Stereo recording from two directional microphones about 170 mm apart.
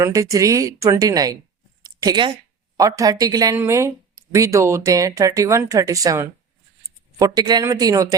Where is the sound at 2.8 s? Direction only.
20° right (ahead or behind).